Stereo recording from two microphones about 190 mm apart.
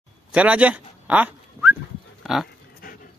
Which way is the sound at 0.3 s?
5° right (ahead or behind).